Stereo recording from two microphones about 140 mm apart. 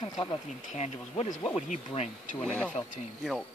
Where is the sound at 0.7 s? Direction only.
45° left (ahead or behind).